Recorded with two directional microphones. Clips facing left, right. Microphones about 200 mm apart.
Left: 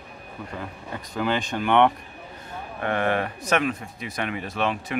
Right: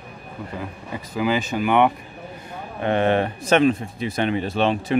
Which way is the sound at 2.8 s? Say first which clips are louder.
Right 5 dB; 25° right (ahead or behind).